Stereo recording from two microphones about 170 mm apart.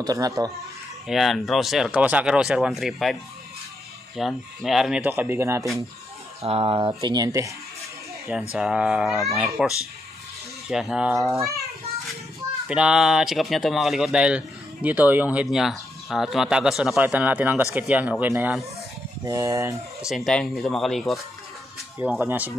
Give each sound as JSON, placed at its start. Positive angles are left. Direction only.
{"t": 0.0, "sound": "speech", "side_deg": -20}
{"t": 1.0, "sound": "speech", "side_deg": 0}
{"t": 4.2, "sound": "speech", "side_deg": 0}
{"t": 6.4, "sound": "speech", "side_deg": -35}
{"t": 8.5, "sound": "speech", "side_deg": -5}
{"t": 10.7, "sound": "speech", "side_deg": -5}
{"t": 12.6, "sound": "speech", "side_deg": -5}
{"t": 20.1, "sound": "speech", "side_deg": 0}
{"t": 22.2, "sound": "speech", "side_deg": -10}